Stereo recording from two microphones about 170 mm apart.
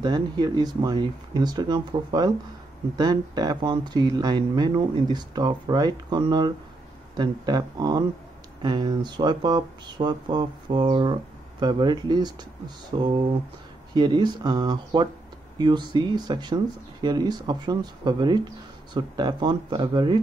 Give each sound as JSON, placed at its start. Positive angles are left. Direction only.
{"t": 0.0, "sound": "speech", "side_deg": -25}